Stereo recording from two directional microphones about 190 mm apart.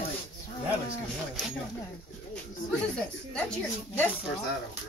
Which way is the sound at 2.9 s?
5° left (ahead or behind).